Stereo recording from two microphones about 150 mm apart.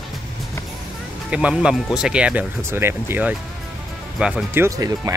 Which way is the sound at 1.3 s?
5° right (ahead or behind).